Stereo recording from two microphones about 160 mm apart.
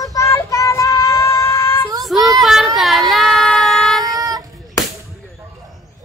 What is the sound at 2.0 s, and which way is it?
Child singing, centre (ahead or behind).